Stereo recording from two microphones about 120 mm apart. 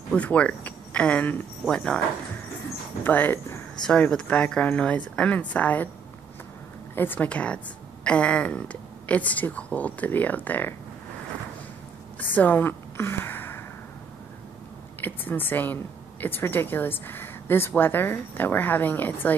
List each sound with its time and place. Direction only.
0.1 s speech: 10° left (ahead or behind)
3.0 s speech: 15° left (ahead or behind)
3.8 s speech: 5° left (ahead or behind)
7.0 s speech: 15° left (ahead or behind)
12.2 s a woman's voice: 15° left (ahead or behind)
15.0 s speech: 15° left (ahead or behind)